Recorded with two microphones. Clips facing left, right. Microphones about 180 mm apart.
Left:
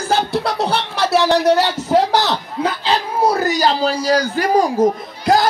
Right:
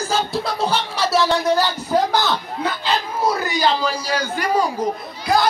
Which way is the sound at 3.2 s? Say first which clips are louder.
Left 4 dB; 40° left (ahead or behind).